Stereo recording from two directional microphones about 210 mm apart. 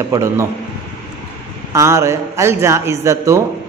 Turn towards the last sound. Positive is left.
turn(degrees=-15)  # may be behind; listen again after turning